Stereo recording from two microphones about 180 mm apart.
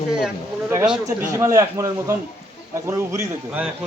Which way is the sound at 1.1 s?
15° right (ahead or behind).